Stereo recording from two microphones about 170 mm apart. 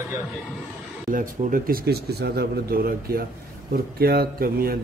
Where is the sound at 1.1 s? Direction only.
55° right (ahead or behind).